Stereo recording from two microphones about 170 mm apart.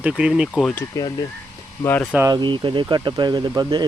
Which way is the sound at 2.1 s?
20° right (ahead or behind).